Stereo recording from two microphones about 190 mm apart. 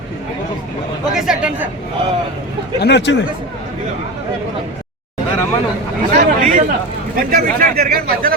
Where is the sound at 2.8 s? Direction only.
65° left (ahead or behind).